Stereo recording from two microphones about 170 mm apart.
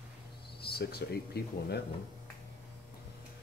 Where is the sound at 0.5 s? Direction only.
70° left (ahead or behind).